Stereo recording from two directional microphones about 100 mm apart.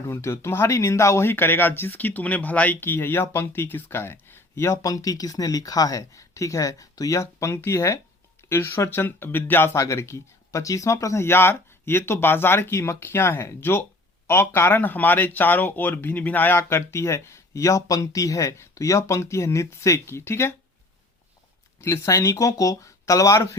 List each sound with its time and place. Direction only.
0.1 s speech: 30° left (ahead or behind)
21.8 s speech: 30° left (ahead or behind)